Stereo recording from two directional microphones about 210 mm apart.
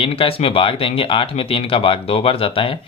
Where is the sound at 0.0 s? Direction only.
25° left (ahead or behind).